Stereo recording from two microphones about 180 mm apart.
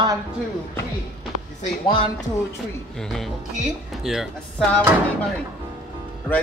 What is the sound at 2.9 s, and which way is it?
Speech, centre (ahead or behind).